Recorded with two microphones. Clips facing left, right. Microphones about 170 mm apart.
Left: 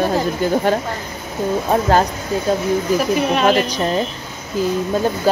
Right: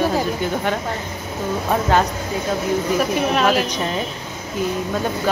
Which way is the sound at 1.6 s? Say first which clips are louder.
Left 2 dB; 35° left (ahead or behind).